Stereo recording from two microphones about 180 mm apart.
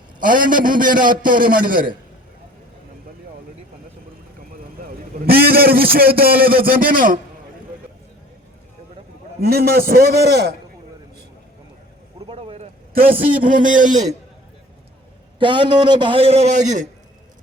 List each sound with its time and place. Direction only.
0.2 s a man's voice: 50° right (ahead or behind)
5.2 s a man's voice: 55° right (ahead or behind)
9.4 s a man's voice: 60° right (ahead or behind)
12.2 s vehicle: 30° right (ahead or behind)
12.9 s a man's voice: 55° right (ahead or behind)
15.4 s a man's voice: 25° right (ahead or behind)